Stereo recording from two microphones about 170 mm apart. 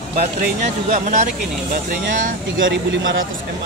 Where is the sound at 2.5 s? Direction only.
90° right.